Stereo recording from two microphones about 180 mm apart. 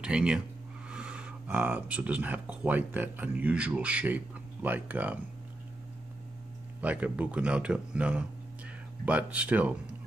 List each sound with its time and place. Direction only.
0.0 s speech: 5° right (ahead or behind)
6.8 s speech: 10° right (ahead or behind)